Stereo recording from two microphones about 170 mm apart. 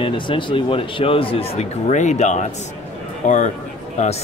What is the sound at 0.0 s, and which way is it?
Speech, 30° left (ahead or behind).